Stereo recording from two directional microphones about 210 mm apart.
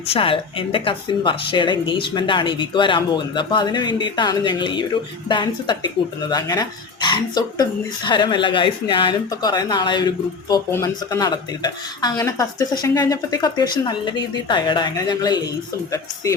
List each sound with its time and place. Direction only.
0.1 s a woman's voice: 25° left (ahead or behind)